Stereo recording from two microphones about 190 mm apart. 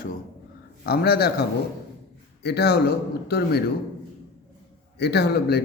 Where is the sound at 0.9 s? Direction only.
55° left (ahead or behind).